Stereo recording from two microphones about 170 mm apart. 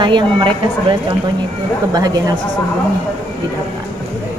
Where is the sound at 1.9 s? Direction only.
20° right (ahead or behind).